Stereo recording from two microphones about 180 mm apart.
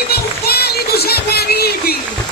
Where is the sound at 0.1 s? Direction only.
60° left (ahead or behind).